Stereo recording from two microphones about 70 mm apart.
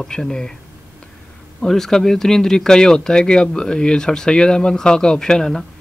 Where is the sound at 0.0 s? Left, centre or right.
Centre.